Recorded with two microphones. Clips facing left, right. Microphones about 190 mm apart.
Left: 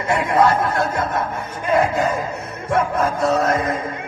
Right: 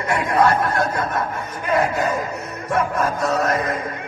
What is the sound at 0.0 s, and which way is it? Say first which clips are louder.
Speech: left 1 dB; 25° left (ahead or behind).